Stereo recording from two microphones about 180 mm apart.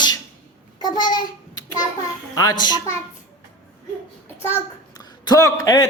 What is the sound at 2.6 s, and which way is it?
Speech, 20° left (ahead or behind).